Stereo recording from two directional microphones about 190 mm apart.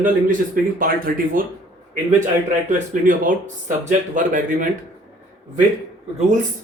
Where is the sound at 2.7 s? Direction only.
45° right (ahead or behind).